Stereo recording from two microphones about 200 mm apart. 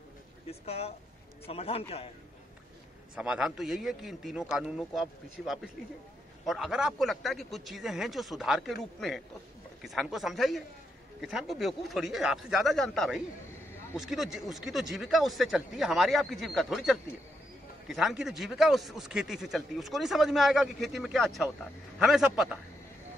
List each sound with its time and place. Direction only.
0.5 s a man's voice: 30° left (ahead or behind)
3.2 s a man's voice: 5° right (ahead or behind)